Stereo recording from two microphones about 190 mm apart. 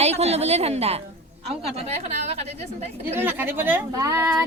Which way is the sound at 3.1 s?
10° right (ahead or behind).